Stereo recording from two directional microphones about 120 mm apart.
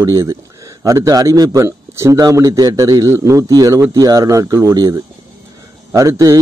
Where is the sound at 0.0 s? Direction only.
25° right (ahead or behind).